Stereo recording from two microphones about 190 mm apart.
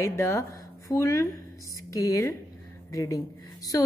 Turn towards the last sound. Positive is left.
turn(degrees=20)  # may be behind; listen again after turning